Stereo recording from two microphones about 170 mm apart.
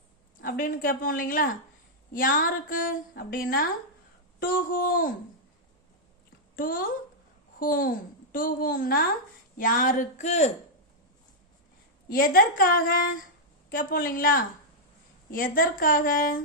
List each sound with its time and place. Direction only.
0.4 s a woman's voice: 55° left (ahead or behind)
6.6 s a woman's voice: 55° left (ahead or behind)
12.0 s a woman's voice: 60° left (ahead or behind)